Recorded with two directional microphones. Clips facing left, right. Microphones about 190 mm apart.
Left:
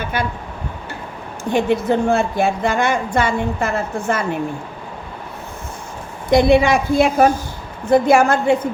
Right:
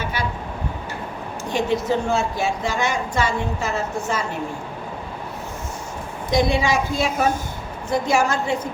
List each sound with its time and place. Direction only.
0.0 s a sound: 55° left (ahead or behind)
1.5 s a woman's voice: 55° left (ahead or behind)
6.3 s a woman's voice: 60° left (ahead or behind)